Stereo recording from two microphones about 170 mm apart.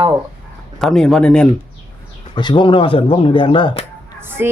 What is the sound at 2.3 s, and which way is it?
Speech, 25° left (ahead or behind).